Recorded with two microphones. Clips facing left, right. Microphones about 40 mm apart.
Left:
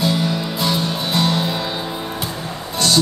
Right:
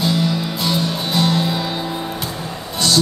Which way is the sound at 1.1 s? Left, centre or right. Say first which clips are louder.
Right 1 dB; left.